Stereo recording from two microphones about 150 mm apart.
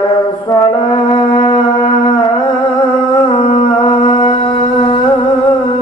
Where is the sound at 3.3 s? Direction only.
40° left (ahead or behind).